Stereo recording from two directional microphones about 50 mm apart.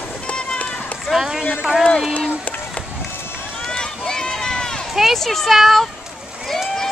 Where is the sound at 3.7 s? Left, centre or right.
Centre.